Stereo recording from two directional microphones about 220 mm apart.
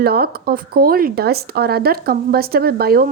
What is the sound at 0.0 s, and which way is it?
Speech, 45° right (ahead or behind).